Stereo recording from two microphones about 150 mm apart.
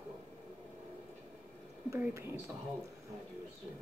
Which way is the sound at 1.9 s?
15° right (ahead or behind).